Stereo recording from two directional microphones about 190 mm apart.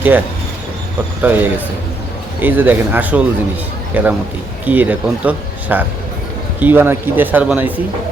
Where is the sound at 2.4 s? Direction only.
10° right (ahead or behind).